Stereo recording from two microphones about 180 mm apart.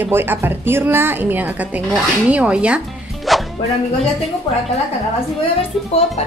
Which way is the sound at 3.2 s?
Centre (ahead or behind).